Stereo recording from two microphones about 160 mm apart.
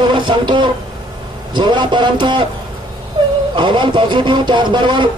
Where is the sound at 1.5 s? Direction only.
30° right (ahead or behind).